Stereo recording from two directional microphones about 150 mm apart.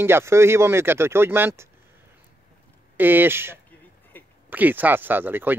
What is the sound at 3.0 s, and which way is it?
Speech, 10° right (ahead or behind).